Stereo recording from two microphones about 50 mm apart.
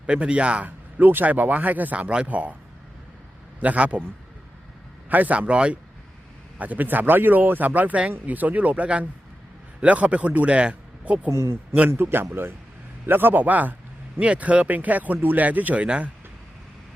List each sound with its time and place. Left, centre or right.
0.0 s a man's voice: right
0.9 s speech: right
3.6 s a man's voice: right
5.0 s a man's voice: right
6.6 s speech: right
11.3 s speech: right
11.9 s speech: right